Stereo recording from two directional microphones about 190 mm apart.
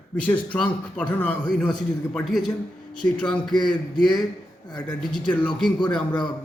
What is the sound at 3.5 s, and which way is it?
Speech, 20° left (ahead or behind).